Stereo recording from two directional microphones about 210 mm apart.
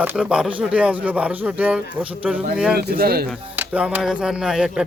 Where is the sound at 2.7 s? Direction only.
45° right (ahead or behind).